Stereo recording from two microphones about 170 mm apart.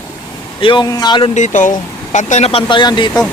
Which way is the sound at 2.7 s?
25° left (ahead or behind).